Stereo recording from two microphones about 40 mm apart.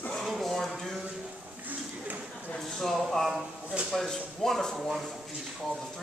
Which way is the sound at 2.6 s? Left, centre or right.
Centre.